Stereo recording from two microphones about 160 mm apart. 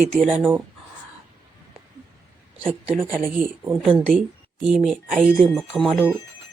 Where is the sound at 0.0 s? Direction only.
5° left (ahead or behind).